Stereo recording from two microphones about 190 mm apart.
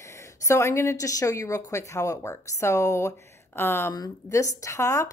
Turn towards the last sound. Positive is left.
turn(degrees=15)  # may be behind; listen again after turning